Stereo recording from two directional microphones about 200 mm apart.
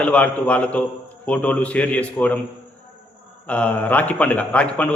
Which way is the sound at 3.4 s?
5° left (ahead or behind).